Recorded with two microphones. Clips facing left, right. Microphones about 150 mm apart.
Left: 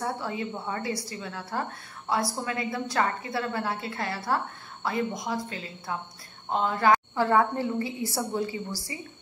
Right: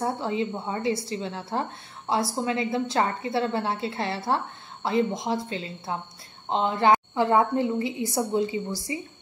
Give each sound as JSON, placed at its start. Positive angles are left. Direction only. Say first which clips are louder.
{"t": 0.0, "sound": "a woman's voice", "louder": "right 4 dB", "side_deg": -25}